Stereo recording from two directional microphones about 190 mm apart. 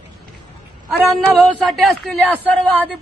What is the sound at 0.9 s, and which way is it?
A woman's voice, centre (ahead or behind).